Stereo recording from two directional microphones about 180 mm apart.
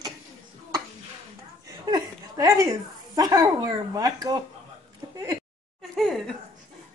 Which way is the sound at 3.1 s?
20° right (ahead or behind).